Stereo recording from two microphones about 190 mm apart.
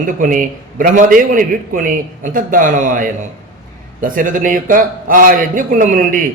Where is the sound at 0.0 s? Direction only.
45° right (ahead or behind).